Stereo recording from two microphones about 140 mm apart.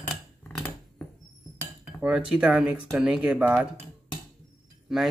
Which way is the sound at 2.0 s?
5° right (ahead or behind).